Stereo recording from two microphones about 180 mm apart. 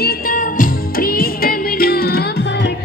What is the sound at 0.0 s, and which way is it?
Music, 55° left (ahead or behind).